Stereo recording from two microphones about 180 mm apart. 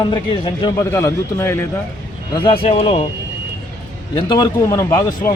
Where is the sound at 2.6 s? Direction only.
35° left (ahead or behind).